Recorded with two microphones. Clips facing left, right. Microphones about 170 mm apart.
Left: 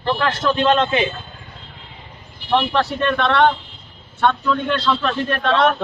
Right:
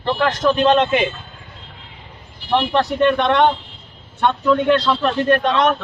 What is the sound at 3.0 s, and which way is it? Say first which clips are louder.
Speech: right 3 dB; 15° right (ahead or behind).